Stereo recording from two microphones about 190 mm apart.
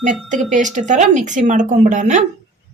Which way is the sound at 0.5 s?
40° right (ahead or behind).